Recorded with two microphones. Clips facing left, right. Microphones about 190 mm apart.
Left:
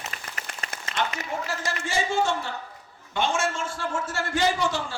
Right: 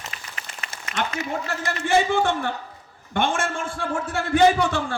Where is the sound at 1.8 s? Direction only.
60° right (ahead or behind).